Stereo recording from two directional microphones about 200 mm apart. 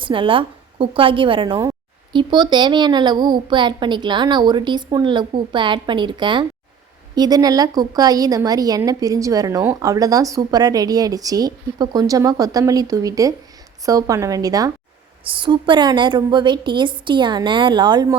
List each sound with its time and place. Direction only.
0.0 s a woman's voice: 25° right (ahead or behind)